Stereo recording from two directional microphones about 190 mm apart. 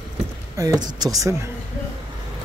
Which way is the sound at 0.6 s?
20° right (ahead or behind).